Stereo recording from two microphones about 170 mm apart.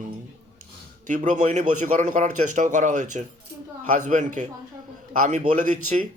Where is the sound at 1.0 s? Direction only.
50° right (ahead or behind).